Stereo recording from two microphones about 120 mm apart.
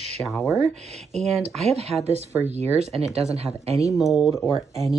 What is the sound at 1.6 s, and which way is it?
A woman's voice, 65° right (ahead or behind).